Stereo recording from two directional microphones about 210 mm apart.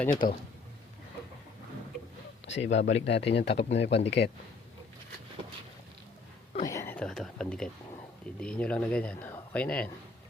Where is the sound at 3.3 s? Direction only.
55° left (ahead or behind).